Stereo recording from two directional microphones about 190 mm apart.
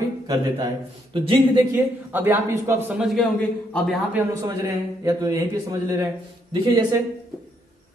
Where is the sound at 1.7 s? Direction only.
10° right (ahead or behind).